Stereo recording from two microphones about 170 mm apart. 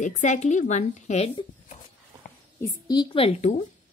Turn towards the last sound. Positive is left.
turn(degrees=40)  # may be behind; listen again after turning